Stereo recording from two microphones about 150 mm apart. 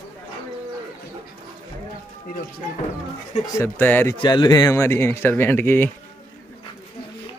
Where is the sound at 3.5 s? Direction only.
15° left (ahead or behind).